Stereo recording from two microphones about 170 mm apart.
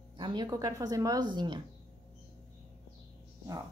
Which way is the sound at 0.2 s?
25° right (ahead or behind).